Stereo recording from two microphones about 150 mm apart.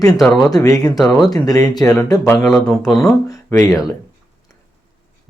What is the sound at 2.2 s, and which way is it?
Speech, 5° left (ahead or behind).